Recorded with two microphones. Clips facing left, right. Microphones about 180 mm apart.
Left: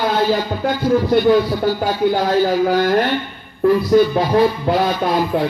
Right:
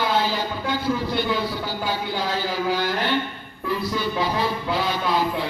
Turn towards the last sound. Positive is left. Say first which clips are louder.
# left 5 dB
turn(degrees=45)  # may be behind; listen again after turning